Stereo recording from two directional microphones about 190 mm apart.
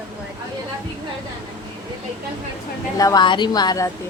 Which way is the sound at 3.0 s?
20° left (ahead or behind).